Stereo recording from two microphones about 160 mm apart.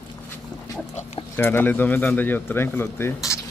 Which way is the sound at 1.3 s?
15° left (ahead or behind).